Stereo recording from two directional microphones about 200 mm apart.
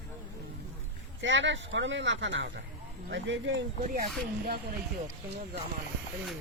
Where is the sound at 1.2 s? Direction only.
65° right (ahead or behind).